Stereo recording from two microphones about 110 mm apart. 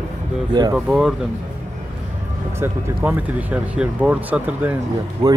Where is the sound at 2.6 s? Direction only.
20° right (ahead or behind).